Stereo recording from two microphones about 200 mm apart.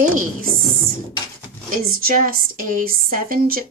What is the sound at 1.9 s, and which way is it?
Speech, 45° right (ahead or behind).